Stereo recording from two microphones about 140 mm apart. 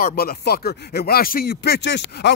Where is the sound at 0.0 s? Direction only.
90° left.